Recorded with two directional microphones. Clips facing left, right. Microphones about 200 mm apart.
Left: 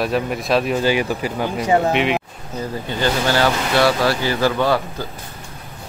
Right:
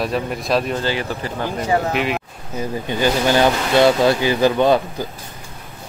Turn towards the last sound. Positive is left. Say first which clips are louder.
# right 3 dB
turn(degrees=-20)  # may be behind; listen again after turning